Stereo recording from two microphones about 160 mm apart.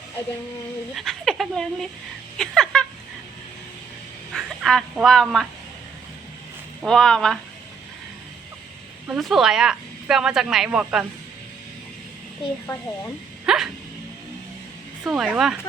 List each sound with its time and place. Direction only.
0.9 s speech: centre (ahead or behind)
2.4 s a sound: 5° left (ahead or behind)
4.4 s fowl: centre (ahead or behind)
4.9 s speech: centre (ahead or behind)
6.8 s speech: 5° left (ahead or behind)
9.0 s speech: centre (ahead or behind)
12.6 s speech: 15° left (ahead or behind)
13.4 s a sound: 5° right (ahead or behind)
15.0 s speech: centre (ahead or behind)